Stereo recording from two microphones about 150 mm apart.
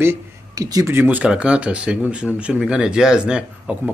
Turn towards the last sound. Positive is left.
turn(degrees=-5)  # may be behind; listen again after turning